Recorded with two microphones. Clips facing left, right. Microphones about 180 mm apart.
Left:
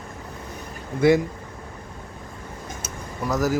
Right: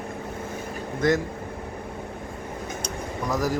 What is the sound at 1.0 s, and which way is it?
Speech, 10° left (ahead or behind).